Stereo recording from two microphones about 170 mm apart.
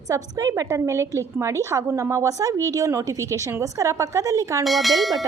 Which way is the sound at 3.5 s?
20° right (ahead or behind).